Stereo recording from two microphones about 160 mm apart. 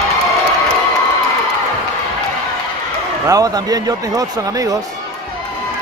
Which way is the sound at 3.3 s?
20° right (ahead or behind).